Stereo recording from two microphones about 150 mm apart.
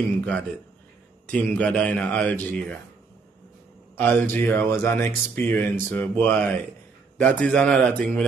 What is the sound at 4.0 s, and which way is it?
Speech, 10° left (ahead or behind).